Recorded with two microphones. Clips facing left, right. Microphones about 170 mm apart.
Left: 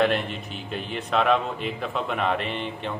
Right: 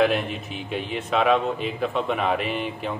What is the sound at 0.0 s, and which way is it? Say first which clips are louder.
A man's voice: right 2 dB; 5° right (ahead or behind).